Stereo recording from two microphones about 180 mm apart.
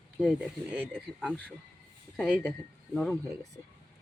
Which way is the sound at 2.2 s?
5° right (ahead or behind).